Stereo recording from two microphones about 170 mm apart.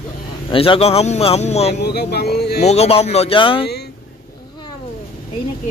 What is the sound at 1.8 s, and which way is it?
Speech, 70° left (ahead or behind).